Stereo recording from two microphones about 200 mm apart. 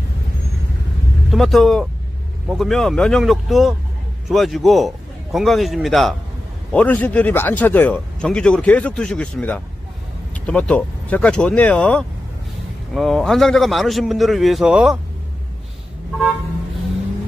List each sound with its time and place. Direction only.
1.3 s a man's voice: centre (ahead or behind)